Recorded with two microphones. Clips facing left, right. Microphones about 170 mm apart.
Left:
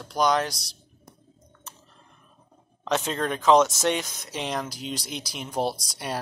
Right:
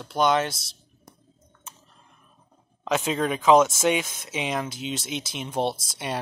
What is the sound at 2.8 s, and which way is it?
Speech, 5° right (ahead or behind).